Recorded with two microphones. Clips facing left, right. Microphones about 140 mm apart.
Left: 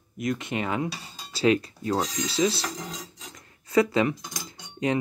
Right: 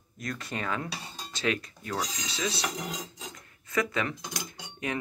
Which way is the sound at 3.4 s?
30° left (ahead or behind).